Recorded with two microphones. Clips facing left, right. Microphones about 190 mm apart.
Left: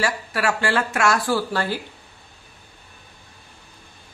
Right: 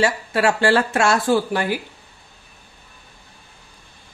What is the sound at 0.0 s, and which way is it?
Speech, 25° right (ahead or behind).